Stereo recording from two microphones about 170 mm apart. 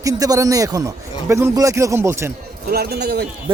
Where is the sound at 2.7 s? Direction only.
65° right (ahead or behind).